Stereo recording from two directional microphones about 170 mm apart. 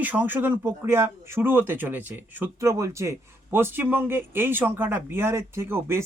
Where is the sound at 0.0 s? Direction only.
10° right (ahead or behind).